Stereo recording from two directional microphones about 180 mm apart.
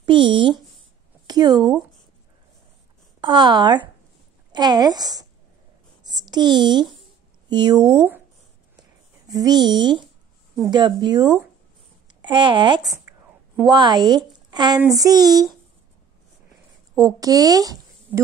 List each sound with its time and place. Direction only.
0.0 s speech: 25° right (ahead or behind)
3.2 s a woman's voice: 25° right (ahead or behind)
9.3 s a woman's voice: 20° right (ahead or behind)
16.9 s a woman's voice: 20° right (ahead or behind)